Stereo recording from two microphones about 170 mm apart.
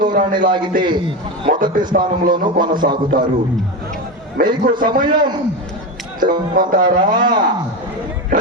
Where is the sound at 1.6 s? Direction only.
55° right (ahead or behind).